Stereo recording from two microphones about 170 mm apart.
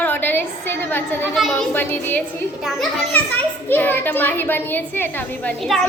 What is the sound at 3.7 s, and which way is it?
A child's voice, 10° left (ahead or behind).